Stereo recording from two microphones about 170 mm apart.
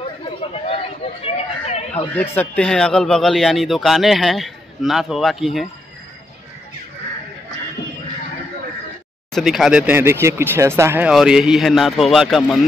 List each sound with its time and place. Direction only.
0.0 s chatter: 35° left (ahead or behind)
1.2 s speech: 35° left (ahead or behind)
2.1 s speech: 10° left (ahead or behind)
9.3 s speech: centre (ahead or behind)
11.1 s speech: 5° right (ahead or behind)